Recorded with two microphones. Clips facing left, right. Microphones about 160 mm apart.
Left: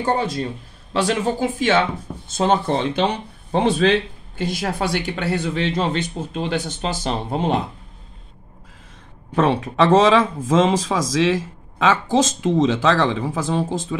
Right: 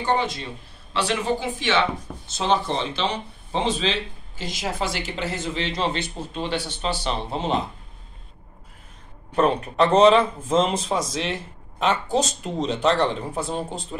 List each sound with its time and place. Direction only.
0.0 s a man's voice: 40° left (ahead or behind)
9.3 s speech: 90° left